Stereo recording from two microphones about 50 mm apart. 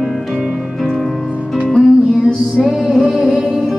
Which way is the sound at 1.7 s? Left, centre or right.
Centre.